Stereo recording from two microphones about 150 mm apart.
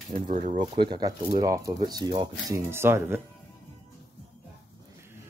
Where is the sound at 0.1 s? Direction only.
55° right (ahead or behind).